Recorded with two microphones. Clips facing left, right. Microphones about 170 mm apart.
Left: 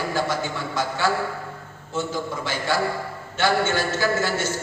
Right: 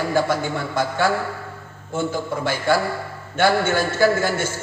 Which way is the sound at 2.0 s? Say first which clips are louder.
Right 3 dB; 55° right (ahead or behind).